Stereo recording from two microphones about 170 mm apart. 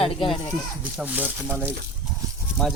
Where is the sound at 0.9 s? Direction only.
10° right (ahead or behind).